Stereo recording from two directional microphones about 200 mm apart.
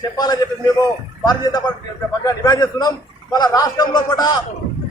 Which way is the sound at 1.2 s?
20° left (ahead or behind).